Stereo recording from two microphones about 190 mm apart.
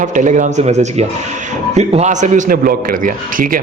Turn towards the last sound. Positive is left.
turn(degrees=-45)  # may be behind; listen again after turning